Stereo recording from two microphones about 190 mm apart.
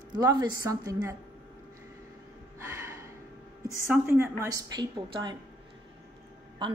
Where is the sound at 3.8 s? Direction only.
10° right (ahead or behind).